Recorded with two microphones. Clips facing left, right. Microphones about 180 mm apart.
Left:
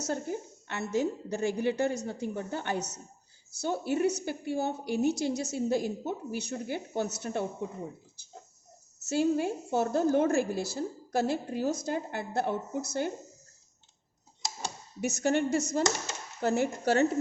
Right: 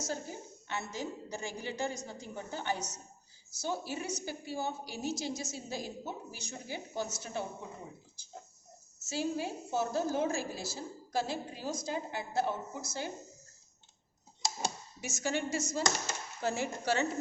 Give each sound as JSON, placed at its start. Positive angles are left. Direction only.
{"t": 0.0, "sound": "a woman's voice", "side_deg": 60}
{"t": 9.0, "sound": "a woman's voice", "side_deg": 60}
{"t": 15.0, "sound": "a woman's voice", "side_deg": 60}